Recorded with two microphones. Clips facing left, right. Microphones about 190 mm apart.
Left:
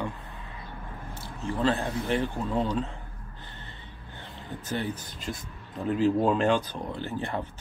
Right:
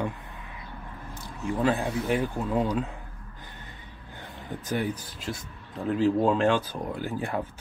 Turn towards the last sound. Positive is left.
turn(degrees=-10)  # may be behind; listen again after turning